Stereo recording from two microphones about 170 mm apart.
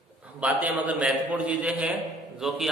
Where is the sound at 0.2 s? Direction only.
10° right (ahead or behind).